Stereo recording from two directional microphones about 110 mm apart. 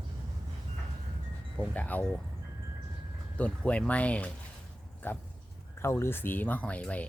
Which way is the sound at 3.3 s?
10° left (ahead or behind).